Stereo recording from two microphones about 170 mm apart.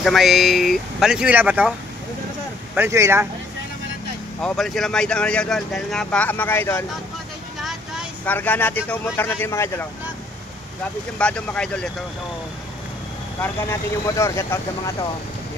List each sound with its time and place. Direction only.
0.0 s speech: centre (ahead or behind)
2.7 s speech: 15° right (ahead or behind)
4.4 s speech: 5° left (ahead or behind)
7.6 s vehicle: 5° right (ahead or behind)
8.3 s speech: 10° left (ahead or behind)
11.1 s speech: 5° left (ahead or behind)
13.4 s speech: 15° left (ahead or behind)